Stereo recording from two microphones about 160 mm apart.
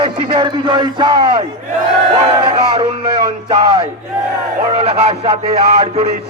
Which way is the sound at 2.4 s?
35° right (ahead or behind).